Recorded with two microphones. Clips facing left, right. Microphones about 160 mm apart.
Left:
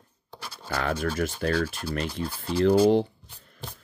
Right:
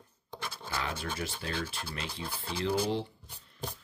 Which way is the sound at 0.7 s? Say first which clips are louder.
Left 9 dB; 55° left (ahead or behind).